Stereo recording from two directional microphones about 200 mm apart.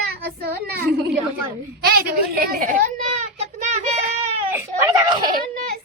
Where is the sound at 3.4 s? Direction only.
35° right (ahead or behind).